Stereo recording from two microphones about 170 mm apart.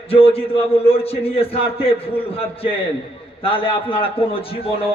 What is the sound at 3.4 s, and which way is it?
A man's voice, 30° left (ahead or behind).